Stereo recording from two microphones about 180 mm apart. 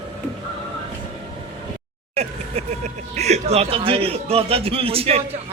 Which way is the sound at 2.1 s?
35° right (ahead or behind).